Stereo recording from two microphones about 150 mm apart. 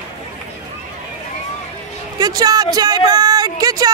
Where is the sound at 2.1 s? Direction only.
25° right (ahead or behind).